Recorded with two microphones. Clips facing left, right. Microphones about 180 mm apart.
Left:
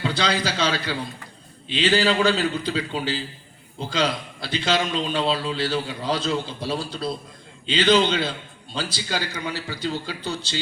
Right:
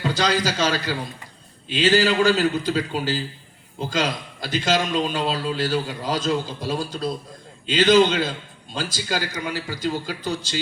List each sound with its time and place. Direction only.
0.0 s a man's voice: 45° right (ahead or behind)